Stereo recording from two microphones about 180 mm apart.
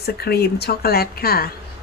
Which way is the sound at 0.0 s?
60° left (ahead or behind).